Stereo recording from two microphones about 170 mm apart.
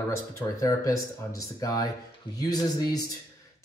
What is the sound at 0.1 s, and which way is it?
Speech, 15° left (ahead or behind).